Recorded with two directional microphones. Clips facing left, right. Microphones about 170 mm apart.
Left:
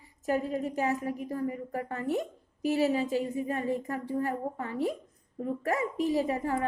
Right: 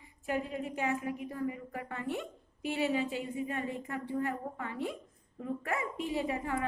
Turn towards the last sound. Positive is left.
turn(degrees=40)  # may be behind; listen again after turning